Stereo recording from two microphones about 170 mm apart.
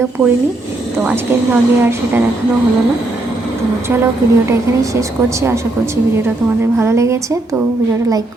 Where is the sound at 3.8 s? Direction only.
15° right (ahead or behind).